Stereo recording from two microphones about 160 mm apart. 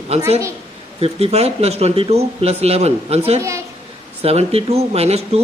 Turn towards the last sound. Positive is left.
turn(degrees=-40)  # may be behind; listen again after turning